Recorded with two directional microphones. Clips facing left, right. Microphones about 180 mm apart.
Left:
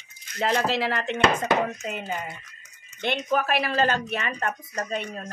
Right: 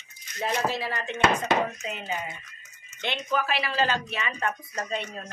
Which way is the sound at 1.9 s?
50° left (ahead or behind).